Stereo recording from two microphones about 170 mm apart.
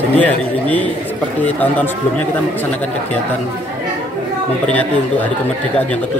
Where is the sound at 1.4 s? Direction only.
10° left (ahead or behind).